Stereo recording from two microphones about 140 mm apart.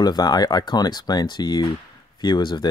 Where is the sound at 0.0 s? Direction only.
30° left (ahead or behind).